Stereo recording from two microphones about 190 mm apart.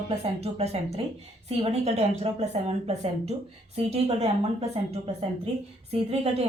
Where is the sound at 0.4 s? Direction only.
35° right (ahead or behind).